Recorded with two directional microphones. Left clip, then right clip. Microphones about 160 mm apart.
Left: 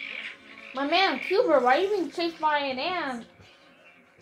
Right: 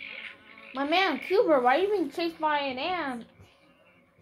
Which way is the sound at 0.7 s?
85° right.